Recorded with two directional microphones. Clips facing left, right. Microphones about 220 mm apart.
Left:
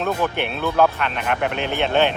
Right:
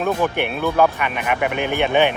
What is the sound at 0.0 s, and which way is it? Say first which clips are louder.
Speech: right 2 dB; 10° right (ahead or behind).